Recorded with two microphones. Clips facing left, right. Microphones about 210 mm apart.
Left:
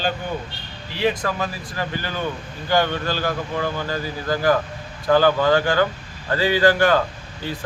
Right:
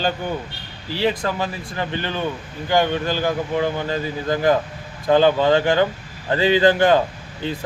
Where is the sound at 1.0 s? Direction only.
25° right (ahead or behind).